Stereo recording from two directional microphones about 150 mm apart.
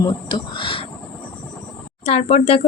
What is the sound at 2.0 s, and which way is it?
Speech, 40° left (ahead or behind).